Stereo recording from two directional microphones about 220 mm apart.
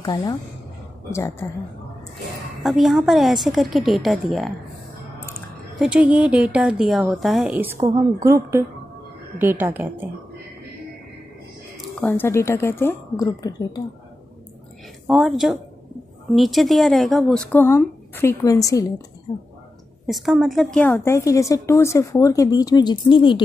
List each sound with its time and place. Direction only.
0.0 s a woman's voice: 20° left (ahead or behind)
2.6 s a woman's voice: centre (ahead or behind)
5.8 s a woman's voice: 5° right (ahead or behind)
7.8 s speech: 20° right (ahead or behind)
12.0 s a woman's voice: 10° left (ahead or behind)
15.0 s a woman's voice: centre (ahead or behind); by 19.0 s 15° left (ahead or behind)
20.1 s a woman's voice: centre (ahead or behind); by 23.4 s 20° left (ahead or behind)